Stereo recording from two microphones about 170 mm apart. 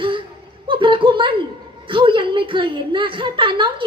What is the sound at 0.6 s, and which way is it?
A woman's voice, 30° right (ahead or behind).